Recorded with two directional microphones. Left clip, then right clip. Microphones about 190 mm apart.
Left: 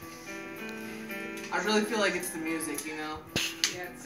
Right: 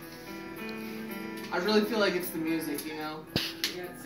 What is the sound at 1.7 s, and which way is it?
Speech, centre (ahead or behind).